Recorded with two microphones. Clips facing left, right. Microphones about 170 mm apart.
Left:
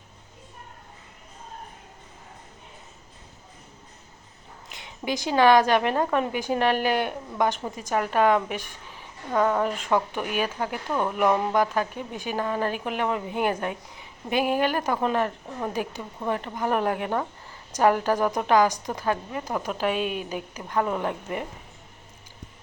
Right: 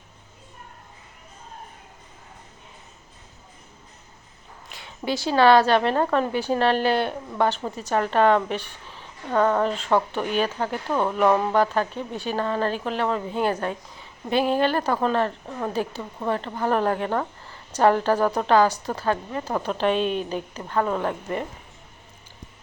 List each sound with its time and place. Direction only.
4.7 s a woman's voice: 20° left (ahead or behind)